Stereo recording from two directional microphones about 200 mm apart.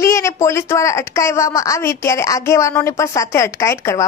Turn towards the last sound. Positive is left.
turn(degrees=15)  # may be behind; listen again after turning